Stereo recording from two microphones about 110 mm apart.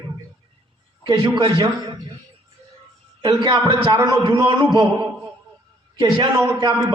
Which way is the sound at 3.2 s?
40° right (ahead or behind).